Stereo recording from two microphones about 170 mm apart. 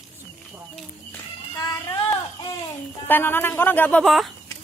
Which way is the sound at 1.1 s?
20° left (ahead or behind).